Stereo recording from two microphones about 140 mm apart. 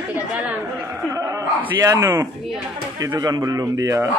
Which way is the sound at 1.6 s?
20° right (ahead or behind).